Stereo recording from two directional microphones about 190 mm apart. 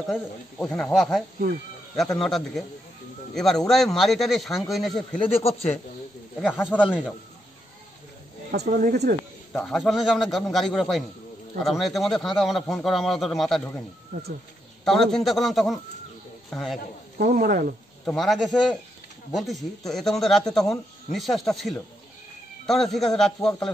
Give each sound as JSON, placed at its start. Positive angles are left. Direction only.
{"t": 0.0, "sound": "speech", "side_deg": 5}
{"t": 5.4, "sound": "speech", "side_deg": 35}
{"t": 6.4, "sound": "speech", "side_deg": -5}
{"t": 8.5, "sound": "speech", "side_deg": -50}
{"t": 9.6, "sound": "speech", "side_deg": 0}
{"t": 14.9, "sound": "speech", "side_deg": 0}
{"t": 17.2, "sound": "speech", "side_deg": -50}
{"t": 18.0, "sound": "speech", "side_deg": 0}